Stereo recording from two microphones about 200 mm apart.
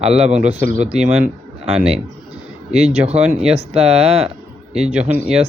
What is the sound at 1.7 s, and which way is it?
Speech, 5° right (ahead or behind).